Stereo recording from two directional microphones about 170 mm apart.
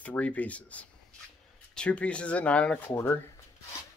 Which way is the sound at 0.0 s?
10° left (ahead or behind).